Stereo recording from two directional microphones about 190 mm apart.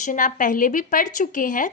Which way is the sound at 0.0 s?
45° left (ahead or behind).